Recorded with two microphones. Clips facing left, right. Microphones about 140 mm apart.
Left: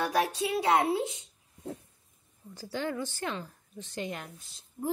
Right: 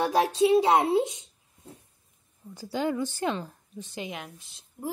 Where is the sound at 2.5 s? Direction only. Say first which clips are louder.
Right 5 dB; 15° right (ahead or behind).